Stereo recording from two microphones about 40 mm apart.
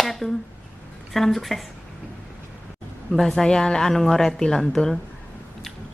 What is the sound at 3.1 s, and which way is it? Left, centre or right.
Speech, centre.